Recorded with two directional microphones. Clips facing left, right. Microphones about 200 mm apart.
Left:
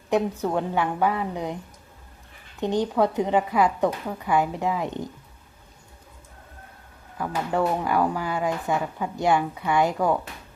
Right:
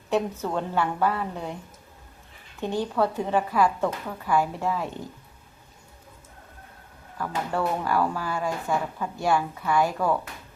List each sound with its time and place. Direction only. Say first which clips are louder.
0.1 s speech: left 3 dB; 15° left (ahead or behind)
2.6 s speech: left 3 dB; 20° left (ahead or behind)
7.2 s speech: left 3 dB; 15° left (ahead or behind)